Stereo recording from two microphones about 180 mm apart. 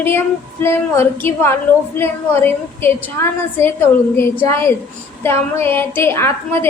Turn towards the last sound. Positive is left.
turn(degrees=15)  # may be behind; listen again after turning